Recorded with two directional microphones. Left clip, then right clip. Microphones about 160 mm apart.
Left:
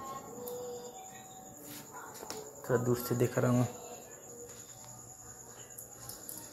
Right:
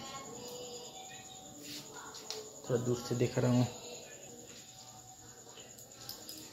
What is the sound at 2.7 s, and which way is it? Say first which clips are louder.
Speech: left 3 dB; 15° left (ahead or behind).